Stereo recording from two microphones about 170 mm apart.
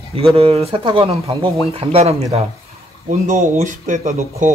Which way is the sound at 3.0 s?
50° right (ahead or behind).